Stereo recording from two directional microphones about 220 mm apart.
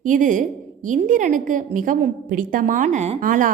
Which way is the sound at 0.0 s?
35° right (ahead or behind).